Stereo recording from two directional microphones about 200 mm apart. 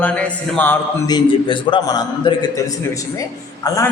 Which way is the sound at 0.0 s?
5° left (ahead or behind).